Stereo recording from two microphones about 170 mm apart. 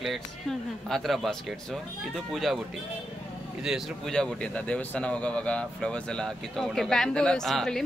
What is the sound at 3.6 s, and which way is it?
Speech, centre (ahead or behind).